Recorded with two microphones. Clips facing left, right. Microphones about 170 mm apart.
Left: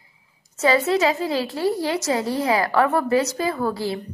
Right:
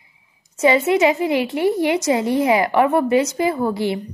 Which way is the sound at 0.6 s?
20° right (ahead or behind).